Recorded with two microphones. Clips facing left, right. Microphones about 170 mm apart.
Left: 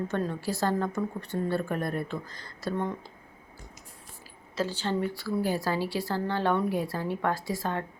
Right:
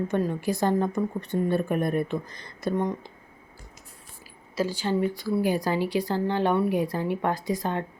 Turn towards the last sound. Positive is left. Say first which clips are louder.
# right 3 dB
turn(degrees=-20)  # may be behind; listen again after turning